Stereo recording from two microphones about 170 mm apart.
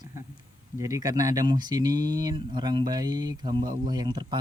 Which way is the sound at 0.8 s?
20° right (ahead or behind).